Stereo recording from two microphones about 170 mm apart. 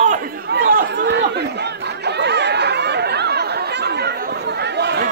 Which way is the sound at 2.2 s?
85° right.